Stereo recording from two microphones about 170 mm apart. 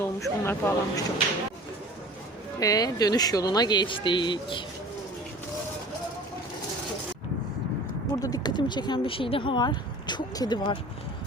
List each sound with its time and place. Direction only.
0.0 s speech: 15° left (ahead or behind)
2.6 s speech: 20° left (ahead or behind)
8.2 s speech: 25° left (ahead or behind)